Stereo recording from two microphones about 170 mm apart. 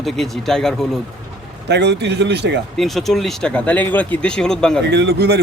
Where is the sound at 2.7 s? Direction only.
Centre (ahead or behind).